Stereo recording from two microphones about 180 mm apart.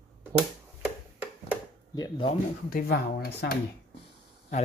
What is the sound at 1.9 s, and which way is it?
Speech, 30° left (ahead or behind).